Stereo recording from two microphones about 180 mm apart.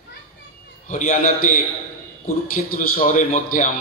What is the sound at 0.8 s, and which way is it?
A man's voice, 45° left (ahead or behind).